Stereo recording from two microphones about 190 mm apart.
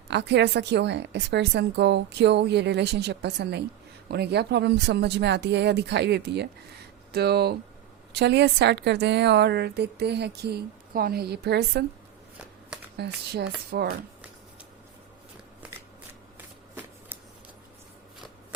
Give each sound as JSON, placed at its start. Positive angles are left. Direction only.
{"t": 0.1, "sound": "a woman's voice", "side_deg": -65}
{"t": 13.0, "sound": "a woman's voice", "side_deg": -60}